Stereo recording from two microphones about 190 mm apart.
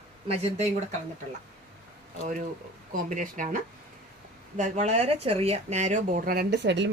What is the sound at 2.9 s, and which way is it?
A woman's voice, 45° right (ahead or behind).